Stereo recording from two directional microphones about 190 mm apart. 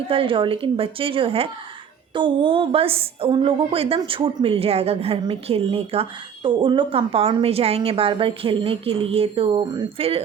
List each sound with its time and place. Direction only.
0.1 s a woman's voice: 30° right (ahead or behind)